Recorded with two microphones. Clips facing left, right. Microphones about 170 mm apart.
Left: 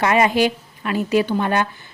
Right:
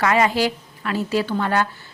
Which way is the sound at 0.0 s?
20° left (ahead or behind).